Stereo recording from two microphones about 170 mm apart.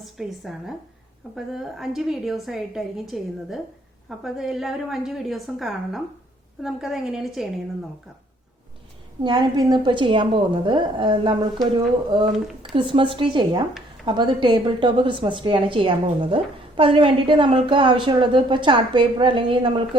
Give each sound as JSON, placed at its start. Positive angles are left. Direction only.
{"t": 0.0, "sound": "a woman's voice", "side_deg": 0}
{"t": 9.2, "sound": "a woman's voice", "side_deg": -25}